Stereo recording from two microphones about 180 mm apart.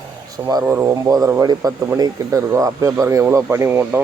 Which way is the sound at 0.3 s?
20° right (ahead or behind).